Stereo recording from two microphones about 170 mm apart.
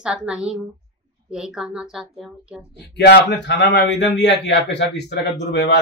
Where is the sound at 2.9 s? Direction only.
75° left (ahead or behind).